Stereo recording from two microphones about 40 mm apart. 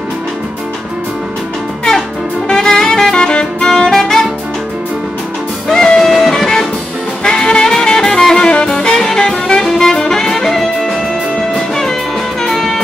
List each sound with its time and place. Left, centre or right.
2.5 s saxophone: centre
3.3 s music: centre
3.9 s saxophone: centre
5.7 s music: centre
7.2 s music: centre
9.6 s saxophone: centre
11.5 s music: centre